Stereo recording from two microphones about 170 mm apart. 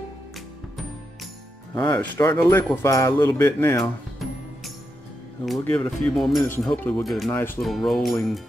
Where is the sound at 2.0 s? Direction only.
15° left (ahead or behind).